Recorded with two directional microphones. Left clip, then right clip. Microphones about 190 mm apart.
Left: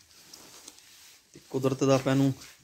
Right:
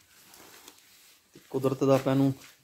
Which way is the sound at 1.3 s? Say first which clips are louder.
Even; centre (ahead or behind).